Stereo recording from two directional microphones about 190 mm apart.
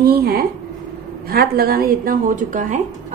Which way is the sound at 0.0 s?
55° right (ahead or behind).